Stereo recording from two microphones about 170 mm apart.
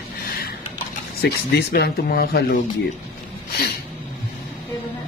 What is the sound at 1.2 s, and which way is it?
Speech, 70° left (ahead or behind).